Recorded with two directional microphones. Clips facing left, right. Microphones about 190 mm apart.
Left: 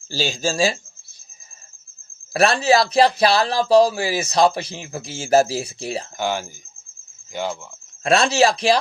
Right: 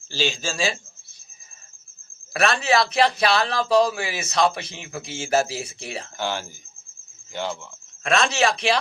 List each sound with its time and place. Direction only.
0.1 s a man's voice: 40° left (ahead or behind)
2.3 s a man's voice: 35° left (ahead or behind)
6.1 s cricket: 15° left (ahead or behind)
8.0 s a man's voice: 35° left (ahead or behind)